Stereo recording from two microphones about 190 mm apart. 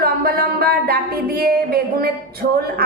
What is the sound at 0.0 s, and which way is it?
Music, 50° right (ahead or behind).